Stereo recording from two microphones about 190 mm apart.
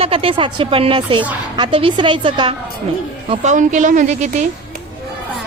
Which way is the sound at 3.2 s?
40° right (ahead or behind).